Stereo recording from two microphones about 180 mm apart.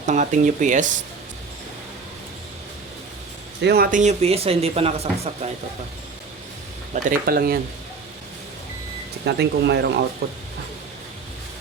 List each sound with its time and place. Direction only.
0.0 s speech: 40° right (ahead or behind)
3.6 s speech: 65° right (ahead or behind)
3.9 s speech: 40° right (ahead or behind)
6.9 s speech: 55° right (ahead or behind)
9.2 s speech: 70° right (ahead or behind)